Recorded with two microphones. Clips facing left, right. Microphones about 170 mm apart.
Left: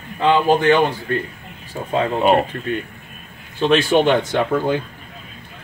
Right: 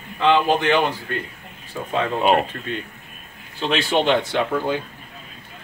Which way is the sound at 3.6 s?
45° left (ahead or behind).